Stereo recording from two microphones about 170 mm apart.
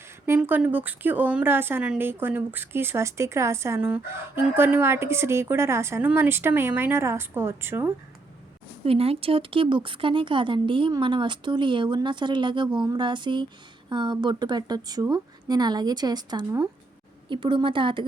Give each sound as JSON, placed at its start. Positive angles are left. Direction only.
{"t": 0.3, "sound": "a woman's voice", "side_deg": -10}
{"t": 8.8, "sound": "speech", "side_deg": -35}